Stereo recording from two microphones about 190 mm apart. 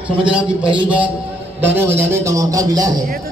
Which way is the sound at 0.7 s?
5° right (ahead or behind).